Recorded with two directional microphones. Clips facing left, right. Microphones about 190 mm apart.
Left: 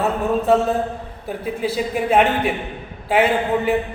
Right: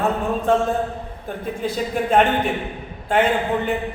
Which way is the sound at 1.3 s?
5° left (ahead or behind).